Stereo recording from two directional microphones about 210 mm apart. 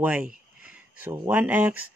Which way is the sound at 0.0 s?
5° right (ahead or behind).